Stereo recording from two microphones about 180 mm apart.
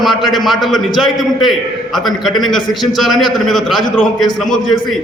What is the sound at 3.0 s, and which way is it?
Speech, centre (ahead or behind).